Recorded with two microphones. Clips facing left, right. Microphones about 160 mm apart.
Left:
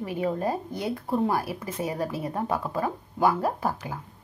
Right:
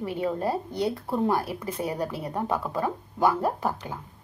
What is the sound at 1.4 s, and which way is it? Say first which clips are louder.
A woman's voice: even; 10° left (ahead or behind).